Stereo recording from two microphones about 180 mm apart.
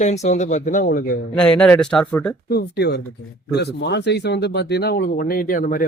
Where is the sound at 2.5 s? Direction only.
65° left (ahead or behind).